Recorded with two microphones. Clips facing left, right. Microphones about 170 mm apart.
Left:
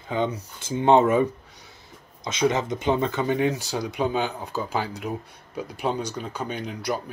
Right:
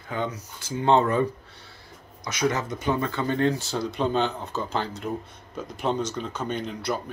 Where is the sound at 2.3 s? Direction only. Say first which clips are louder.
Left 3 dB; 25° left (ahead or behind); by 7.0 s 5° left (ahead or behind).